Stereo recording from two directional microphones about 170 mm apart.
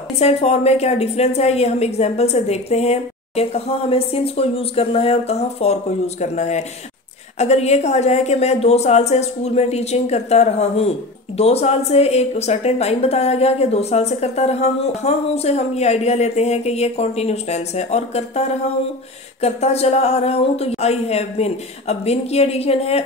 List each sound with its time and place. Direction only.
0.2 s a woman's voice: 40° left (ahead or behind)
19.4 s a woman's voice: 40° left (ahead or behind)